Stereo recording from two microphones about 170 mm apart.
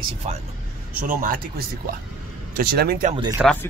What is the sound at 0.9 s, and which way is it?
Speech, 55° right (ahead or behind).